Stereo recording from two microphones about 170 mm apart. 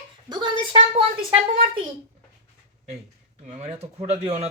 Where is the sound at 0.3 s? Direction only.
25° right (ahead or behind).